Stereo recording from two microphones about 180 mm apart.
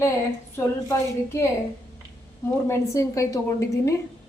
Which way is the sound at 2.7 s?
15° left (ahead or behind).